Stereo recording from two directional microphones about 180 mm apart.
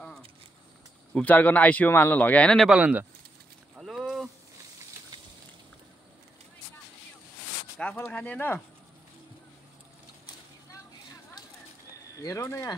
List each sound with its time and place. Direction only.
1.1 s speech: 10° left (ahead or behind); by 3.1 s 10° right (ahead or behind)
3.7 s a sound: 5° right (ahead or behind)
7.8 s speech: 10° left (ahead or behind)
12.2 s speech: 15° left (ahead or behind)